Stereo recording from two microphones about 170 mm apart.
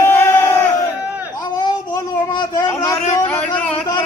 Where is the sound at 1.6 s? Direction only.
20° left (ahead or behind).